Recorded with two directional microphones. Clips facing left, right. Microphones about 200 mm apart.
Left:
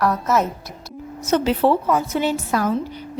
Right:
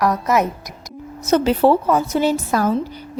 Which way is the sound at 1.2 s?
40° right (ahead or behind).